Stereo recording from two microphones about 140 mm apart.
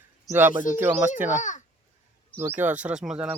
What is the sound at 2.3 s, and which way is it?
Speech, 15° right (ahead or behind).